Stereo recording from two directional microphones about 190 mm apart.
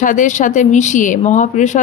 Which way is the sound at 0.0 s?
45° left (ahead or behind).